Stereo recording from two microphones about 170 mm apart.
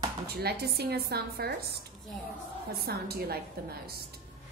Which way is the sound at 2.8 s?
65° right (ahead or behind).